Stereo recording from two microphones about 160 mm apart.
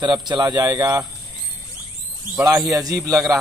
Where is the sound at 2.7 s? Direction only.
20° right (ahead or behind).